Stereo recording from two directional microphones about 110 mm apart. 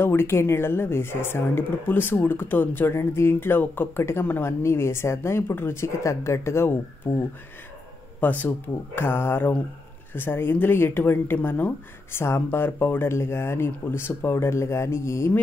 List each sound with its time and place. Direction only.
0.0 s speech: 20° left (ahead or behind)